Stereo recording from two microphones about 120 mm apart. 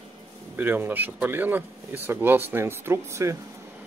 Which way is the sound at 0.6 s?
15° right (ahead or behind).